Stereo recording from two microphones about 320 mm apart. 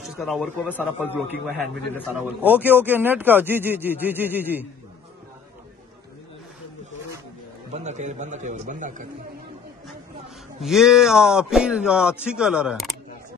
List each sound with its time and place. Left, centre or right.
0.2 s a man's voice: centre
7.7 s a man's voice: right
10.6 s a man's voice: centre